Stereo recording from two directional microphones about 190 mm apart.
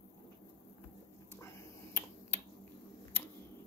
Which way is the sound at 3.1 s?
10° left (ahead or behind).